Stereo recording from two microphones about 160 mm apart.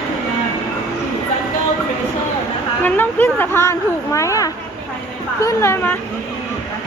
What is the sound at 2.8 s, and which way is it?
A woman's voice, 10° left (ahead or behind).